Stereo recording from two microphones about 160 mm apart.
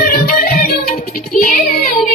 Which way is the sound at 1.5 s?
60° left (ahead or behind).